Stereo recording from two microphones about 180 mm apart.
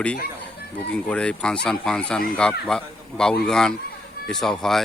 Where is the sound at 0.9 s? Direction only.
5° left (ahead or behind).